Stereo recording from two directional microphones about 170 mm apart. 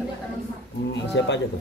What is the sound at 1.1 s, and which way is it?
Speech, 90° left.